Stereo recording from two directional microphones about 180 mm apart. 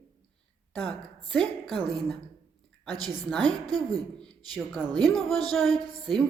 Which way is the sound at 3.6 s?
20° right (ahead or behind).